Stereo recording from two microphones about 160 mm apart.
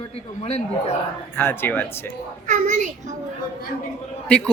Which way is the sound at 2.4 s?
50° right (ahead or behind).